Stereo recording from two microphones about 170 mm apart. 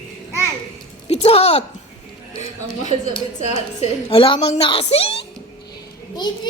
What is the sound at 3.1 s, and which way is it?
A woman's voice, 40° left (ahead or behind).